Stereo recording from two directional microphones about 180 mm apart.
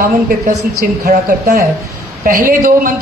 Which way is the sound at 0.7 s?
55° right (ahead or behind).